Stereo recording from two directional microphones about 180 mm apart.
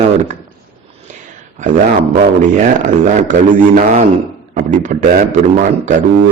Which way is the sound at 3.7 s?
40° right (ahead or behind).